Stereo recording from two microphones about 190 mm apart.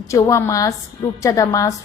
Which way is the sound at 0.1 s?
15° left (ahead or behind).